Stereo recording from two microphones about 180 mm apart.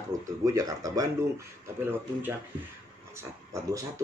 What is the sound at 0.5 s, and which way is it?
Speech, 20° right (ahead or behind).